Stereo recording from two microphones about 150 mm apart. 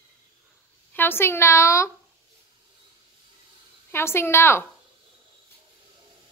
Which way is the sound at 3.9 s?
15° left (ahead or behind).